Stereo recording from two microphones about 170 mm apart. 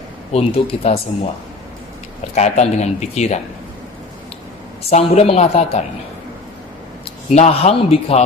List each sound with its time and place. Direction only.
0.3 s speech: 35° left (ahead or behind)
2.3 s speech: 40° left (ahead or behind)
4.9 s speech: 40° left (ahead or behind)
7.0 s speech: 40° left (ahead or behind)